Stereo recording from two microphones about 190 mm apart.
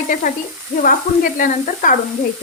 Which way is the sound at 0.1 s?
45° left (ahead or behind).